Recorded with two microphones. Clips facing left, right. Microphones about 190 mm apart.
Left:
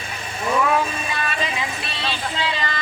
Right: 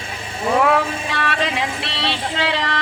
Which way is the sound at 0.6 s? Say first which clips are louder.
Right 3 dB; 75° right (ahead or behind).